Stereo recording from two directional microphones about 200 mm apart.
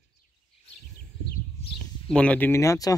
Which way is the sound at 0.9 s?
50° left (ahead or behind).